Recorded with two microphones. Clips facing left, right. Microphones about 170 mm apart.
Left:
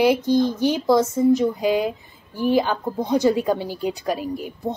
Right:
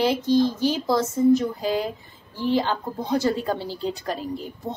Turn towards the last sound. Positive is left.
turn(degrees=10)  # may be behind; listen again after turning